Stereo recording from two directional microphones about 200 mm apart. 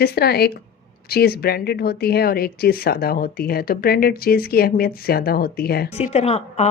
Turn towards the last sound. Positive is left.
turn(degrees=30)  # may be behind; listen again after turning